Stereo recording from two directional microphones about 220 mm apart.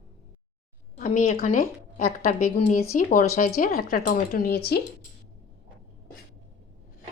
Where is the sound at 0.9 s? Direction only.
35° left (ahead or behind).